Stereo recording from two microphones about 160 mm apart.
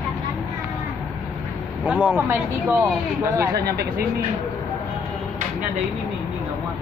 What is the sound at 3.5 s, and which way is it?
Speech, 90° right.